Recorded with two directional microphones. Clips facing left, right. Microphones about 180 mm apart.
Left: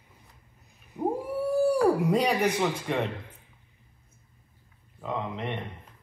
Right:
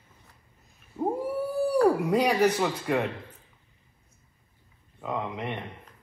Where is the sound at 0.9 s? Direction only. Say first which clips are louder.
Even; 15° left (ahead or behind).